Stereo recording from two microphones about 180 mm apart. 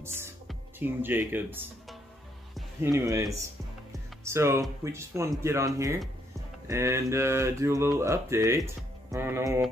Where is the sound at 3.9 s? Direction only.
15° right (ahead or behind).